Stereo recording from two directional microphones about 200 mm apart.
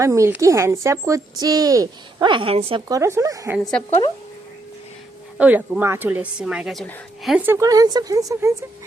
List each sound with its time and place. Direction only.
0.0 s a woman's voice: 15° right (ahead or behind)
2.9 s a woman's voice: 15° right (ahead or behind)
3.6 s speech: 5° left (ahead or behind)
3.8 s speech: 30° left (ahead or behind)
5.4 s a woman's voice: 10° right (ahead or behind)